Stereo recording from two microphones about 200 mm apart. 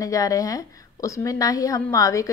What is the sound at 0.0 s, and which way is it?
Speech, 15° left (ahead or behind).